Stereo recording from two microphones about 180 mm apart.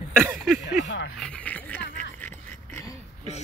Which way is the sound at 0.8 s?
80° left.